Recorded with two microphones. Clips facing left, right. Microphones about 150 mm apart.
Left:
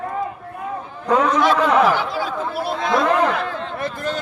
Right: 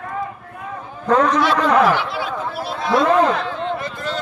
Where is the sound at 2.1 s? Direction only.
40° left (ahead or behind).